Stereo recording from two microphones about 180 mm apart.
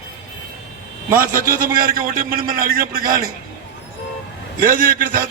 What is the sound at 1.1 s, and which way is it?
A man's voice, 55° right (ahead or behind).